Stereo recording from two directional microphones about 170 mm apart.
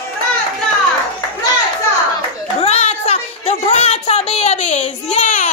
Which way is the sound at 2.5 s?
40° left (ahead or behind).